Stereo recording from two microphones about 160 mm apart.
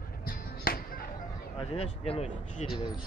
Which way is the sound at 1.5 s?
35° left (ahead or behind).